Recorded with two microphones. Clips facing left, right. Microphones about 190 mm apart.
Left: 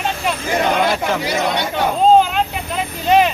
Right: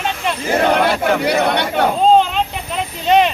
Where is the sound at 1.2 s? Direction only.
60° right (ahead or behind).